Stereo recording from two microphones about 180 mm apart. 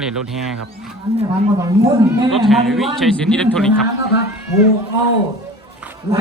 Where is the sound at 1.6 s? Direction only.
20° right (ahead or behind).